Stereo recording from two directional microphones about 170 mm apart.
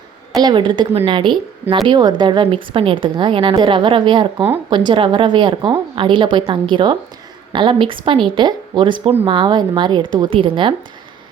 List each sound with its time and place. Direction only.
0.4 s a woman's voice: 30° right (ahead or behind)